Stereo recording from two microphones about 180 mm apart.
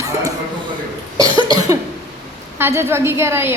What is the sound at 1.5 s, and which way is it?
Cough, 20° right (ahead or behind).